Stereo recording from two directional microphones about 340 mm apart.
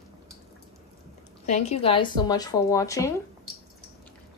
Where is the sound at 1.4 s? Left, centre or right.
Centre.